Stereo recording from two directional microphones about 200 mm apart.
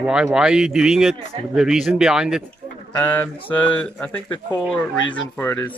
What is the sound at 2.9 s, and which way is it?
A man's voice, 10° left (ahead or behind).